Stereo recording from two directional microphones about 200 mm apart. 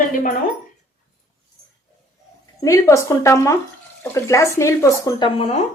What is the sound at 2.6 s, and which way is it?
Speech, 15° left (ahead or behind).